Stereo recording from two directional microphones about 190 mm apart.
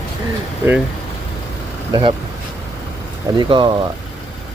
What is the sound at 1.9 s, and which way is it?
Speech, 25° right (ahead or behind).